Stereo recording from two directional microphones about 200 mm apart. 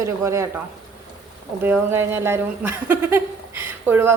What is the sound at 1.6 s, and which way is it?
A woman's voice, 10° right (ahead or behind).